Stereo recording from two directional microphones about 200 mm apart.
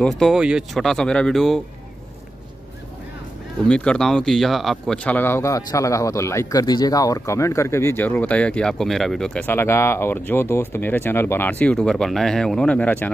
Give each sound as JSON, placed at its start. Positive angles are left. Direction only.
{"t": 0.0, "sound": "speech", "side_deg": 0}
{"t": 3.6, "sound": "speech", "side_deg": 5}